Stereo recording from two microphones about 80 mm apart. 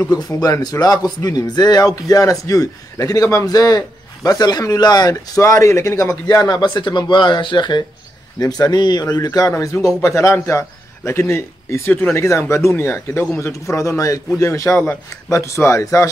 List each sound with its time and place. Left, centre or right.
0.0 s speech: left
8.4 s speech: left
9.6 s speech: left
13.4 s speech: left